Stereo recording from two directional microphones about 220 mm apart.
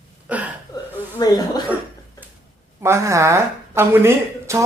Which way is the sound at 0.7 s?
20° left (ahead or behind).